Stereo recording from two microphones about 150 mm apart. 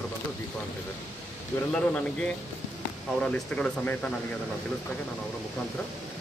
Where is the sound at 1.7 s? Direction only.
10° left (ahead or behind).